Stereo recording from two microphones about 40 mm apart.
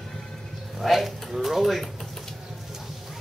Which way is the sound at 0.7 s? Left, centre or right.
Centre.